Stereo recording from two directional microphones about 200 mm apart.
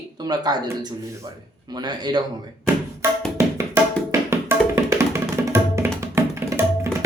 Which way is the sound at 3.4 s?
15° right (ahead or behind).